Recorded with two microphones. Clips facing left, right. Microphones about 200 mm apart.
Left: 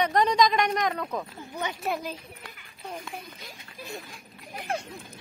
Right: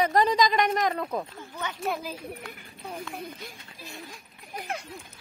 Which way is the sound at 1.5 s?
15° left (ahead or behind).